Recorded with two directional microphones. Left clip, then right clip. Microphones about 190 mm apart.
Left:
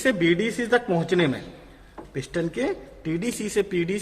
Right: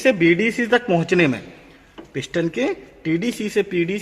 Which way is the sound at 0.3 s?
55° right (ahead or behind).